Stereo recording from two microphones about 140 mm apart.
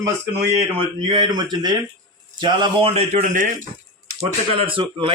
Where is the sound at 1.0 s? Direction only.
30° right (ahead or behind).